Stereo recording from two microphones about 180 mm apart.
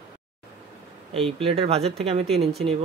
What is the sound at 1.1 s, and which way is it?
Speech, 30° right (ahead or behind).